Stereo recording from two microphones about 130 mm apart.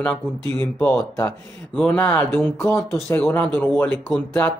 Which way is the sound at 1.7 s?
10° left (ahead or behind).